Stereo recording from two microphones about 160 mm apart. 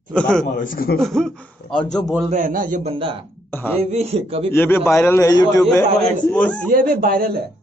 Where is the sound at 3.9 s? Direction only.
40° right (ahead or behind).